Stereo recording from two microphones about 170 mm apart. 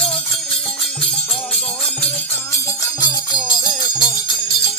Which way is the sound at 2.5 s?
20° left (ahead or behind).